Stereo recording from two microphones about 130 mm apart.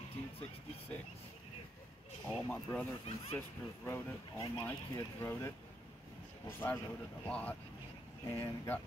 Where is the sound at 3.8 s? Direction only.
20° left (ahead or behind).